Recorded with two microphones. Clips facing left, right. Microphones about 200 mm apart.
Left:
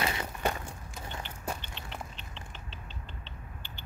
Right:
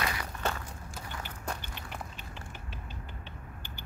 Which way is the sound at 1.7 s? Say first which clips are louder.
Even; 10° right (ahead or behind).